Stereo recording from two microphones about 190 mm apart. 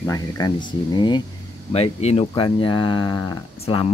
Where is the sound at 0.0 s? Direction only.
15° left (ahead or behind).